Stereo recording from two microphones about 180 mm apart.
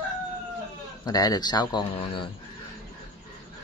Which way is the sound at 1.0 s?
20° left (ahead or behind).